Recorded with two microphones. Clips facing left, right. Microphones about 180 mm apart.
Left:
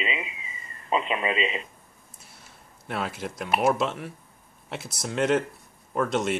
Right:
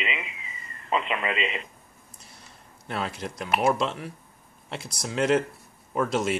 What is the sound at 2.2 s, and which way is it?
Speech, 5° left (ahead or behind).